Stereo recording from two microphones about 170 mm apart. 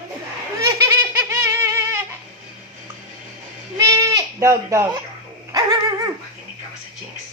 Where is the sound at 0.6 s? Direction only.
15° right (ahead or behind).